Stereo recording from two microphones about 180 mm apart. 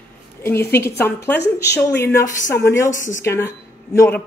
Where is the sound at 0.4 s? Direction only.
10° left (ahead or behind).